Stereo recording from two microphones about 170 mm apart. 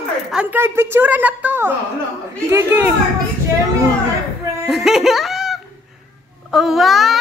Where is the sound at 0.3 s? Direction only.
10° right (ahead or behind).